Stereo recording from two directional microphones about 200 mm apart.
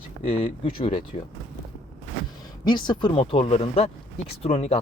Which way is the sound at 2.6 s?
20° left (ahead or behind).